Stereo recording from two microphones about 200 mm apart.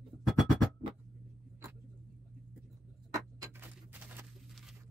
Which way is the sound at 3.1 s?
15° right (ahead or behind).